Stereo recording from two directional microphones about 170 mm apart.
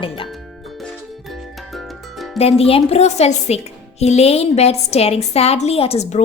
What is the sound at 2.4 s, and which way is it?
A woman's voice, 35° left (ahead or behind).